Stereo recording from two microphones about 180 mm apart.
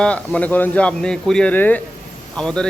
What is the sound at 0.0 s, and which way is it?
A man's voice, 5° left (ahead or behind).